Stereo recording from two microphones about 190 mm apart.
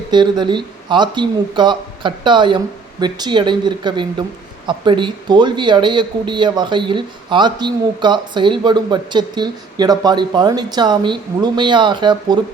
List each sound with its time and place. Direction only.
0.1 s speech: 25° right (ahead or behind)